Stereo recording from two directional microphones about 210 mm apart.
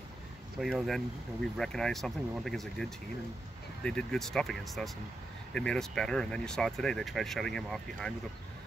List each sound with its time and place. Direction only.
0.6 s speech: centre (ahead or behind)